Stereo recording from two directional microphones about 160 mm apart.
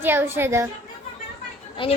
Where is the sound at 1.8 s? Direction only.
35° left (ahead or behind).